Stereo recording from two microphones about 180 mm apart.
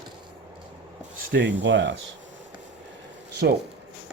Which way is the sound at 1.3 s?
90° right.